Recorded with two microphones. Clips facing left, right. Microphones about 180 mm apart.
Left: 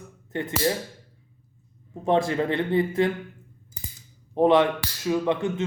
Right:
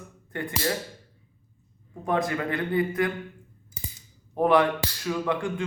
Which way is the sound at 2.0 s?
25° left (ahead or behind).